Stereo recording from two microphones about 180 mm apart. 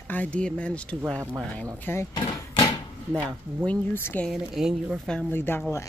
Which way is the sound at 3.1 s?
5° left (ahead or behind).